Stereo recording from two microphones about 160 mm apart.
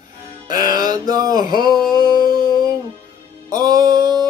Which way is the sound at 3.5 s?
25° right (ahead or behind).